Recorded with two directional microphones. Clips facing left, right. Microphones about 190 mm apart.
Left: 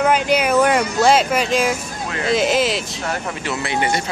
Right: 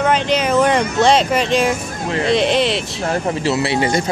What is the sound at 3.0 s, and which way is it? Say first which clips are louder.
Speech: right 6 dB; 35° right (ahead or behind).